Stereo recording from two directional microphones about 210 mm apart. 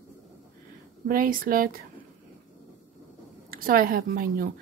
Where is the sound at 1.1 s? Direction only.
40° right (ahead or behind).